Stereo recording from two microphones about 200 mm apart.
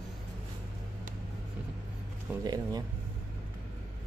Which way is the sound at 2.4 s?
20° right (ahead or behind).